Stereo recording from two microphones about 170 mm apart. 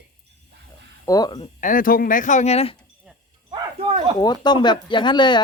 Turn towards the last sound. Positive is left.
turn(degrees=25)  # may be behind; listen again after turning